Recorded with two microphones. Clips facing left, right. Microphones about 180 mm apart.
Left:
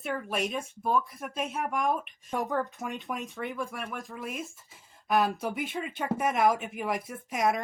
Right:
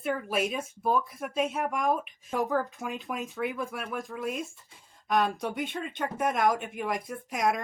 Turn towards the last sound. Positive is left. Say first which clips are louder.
# even
turn(degrees=0)  # may be behind; listen again after turning